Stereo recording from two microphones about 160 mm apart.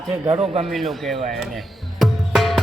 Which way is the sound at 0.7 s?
Centre (ahead or behind).